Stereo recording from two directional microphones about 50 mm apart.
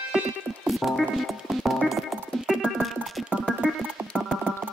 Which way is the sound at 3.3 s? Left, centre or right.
Right.